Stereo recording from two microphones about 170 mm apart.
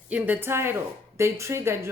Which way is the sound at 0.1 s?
10° right (ahead or behind).